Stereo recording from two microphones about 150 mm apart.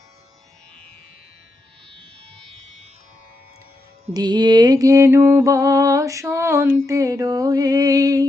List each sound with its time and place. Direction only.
4.1 s mantra: 30° right (ahead or behind)